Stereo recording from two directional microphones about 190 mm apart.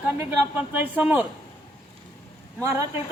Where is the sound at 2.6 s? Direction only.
15° right (ahead or behind).